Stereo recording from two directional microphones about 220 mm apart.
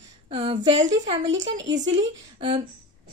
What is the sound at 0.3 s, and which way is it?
Speech, 25° right (ahead or behind).